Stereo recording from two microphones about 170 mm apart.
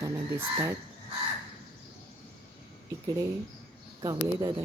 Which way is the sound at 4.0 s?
25° right (ahead or behind).